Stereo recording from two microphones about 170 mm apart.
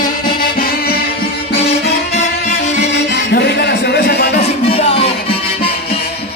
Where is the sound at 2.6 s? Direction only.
45° left (ahead or behind).